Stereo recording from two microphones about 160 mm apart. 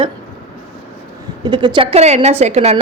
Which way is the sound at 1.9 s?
40° right (ahead or behind).